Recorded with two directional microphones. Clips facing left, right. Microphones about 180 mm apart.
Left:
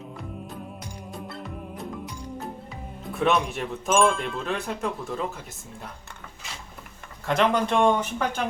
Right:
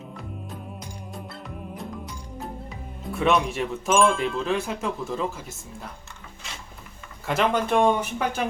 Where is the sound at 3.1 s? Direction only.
Centre (ahead or behind).